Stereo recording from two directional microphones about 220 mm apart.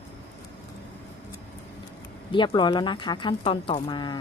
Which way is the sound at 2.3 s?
20° left (ahead or behind).